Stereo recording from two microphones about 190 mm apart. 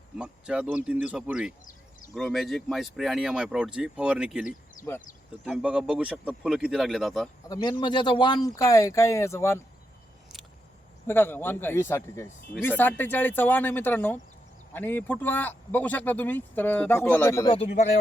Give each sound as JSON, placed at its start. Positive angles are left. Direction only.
{"t": 0.2, "sound": "speech", "side_deg": -5}
{"t": 7.4, "sound": "speech", "side_deg": 20}
{"t": 11.0, "sound": "speech", "side_deg": 10}
{"t": 17.5, "sound": "speech", "side_deg": 35}